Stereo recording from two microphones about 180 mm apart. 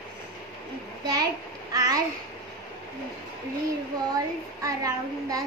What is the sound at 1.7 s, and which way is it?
Speech, 20° right (ahead or behind).